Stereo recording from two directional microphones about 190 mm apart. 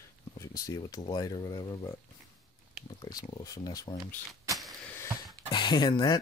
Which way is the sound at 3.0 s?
20° left (ahead or behind).